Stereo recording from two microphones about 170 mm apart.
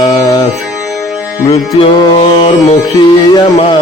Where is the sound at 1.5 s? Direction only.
35° left (ahead or behind).